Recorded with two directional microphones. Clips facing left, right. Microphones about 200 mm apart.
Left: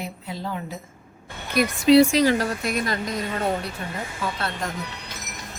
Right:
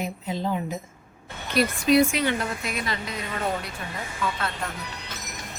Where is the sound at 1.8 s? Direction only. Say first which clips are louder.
Left 6 dB; 30° left (ahead or behind).